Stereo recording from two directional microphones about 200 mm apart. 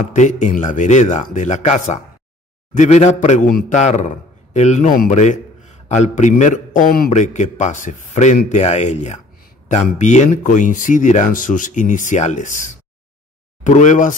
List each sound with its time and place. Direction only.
0.1 s a man's voice: 40° left (ahead or behind)